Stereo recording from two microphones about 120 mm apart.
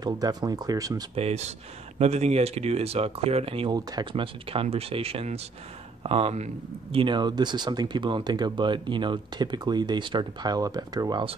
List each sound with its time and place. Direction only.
0.0 s speech: 35° right (ahead or behind)
1.1 s speech: 60° right (ahead or behind)
3.7 s speech: 40° right (ahead or behind); by 6.5 s 60° right (ahead or behind)
6.9 s speech: 45° right (ahead or behind)